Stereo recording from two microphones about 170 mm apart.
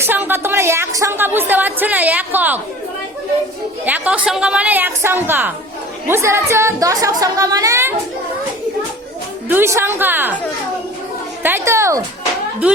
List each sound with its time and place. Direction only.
0.0 s speech: 10° right (ahead or behind)
3.8 s a woman's voice: 10° right (ahead or behind)
9.5 s speech: 15° right (ahead or behind)
11.4 s speech: 15° right (ahead or behind)